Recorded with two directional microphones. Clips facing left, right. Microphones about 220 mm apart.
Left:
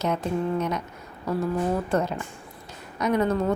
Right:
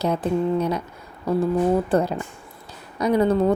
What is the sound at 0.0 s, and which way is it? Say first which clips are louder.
Speech: right 4 dB; 35° right (ahead or behind).